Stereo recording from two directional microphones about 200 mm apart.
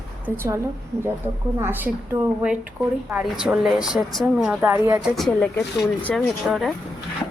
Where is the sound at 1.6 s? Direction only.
10° right (ahead or behind).